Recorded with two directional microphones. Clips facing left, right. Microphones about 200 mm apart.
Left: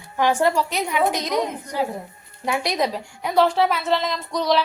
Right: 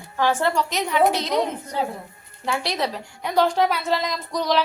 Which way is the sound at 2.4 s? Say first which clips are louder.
Left 2 dB; 15° left (ahead or behind).